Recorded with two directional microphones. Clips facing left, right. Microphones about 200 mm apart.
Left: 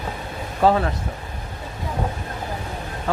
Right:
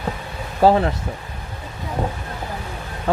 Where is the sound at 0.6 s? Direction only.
35° right (ahead or behind).